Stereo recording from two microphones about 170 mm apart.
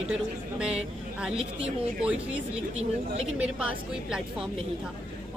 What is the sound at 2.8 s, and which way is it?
Speech, 40° right (ahead or behind).